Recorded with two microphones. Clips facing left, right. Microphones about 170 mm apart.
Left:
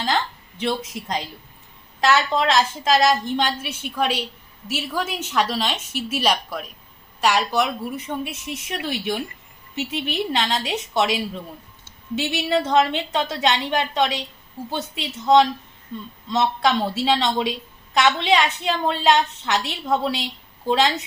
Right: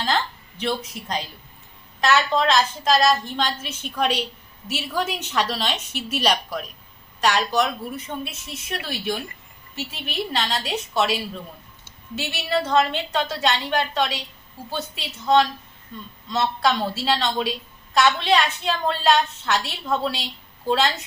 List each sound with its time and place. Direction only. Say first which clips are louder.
0.6 s a woman's voice: left 1 dB; 25° left (ahead or behind)